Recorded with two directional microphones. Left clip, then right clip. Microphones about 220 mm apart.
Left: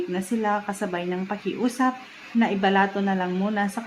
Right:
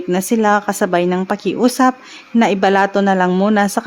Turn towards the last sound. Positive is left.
turn(degrees=-50)  # may be behind; listen again after turning